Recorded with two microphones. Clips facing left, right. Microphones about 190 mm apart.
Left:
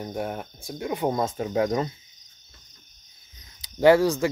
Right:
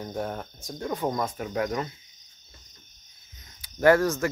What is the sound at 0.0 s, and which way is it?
Speech, 10° left (ahead or behind).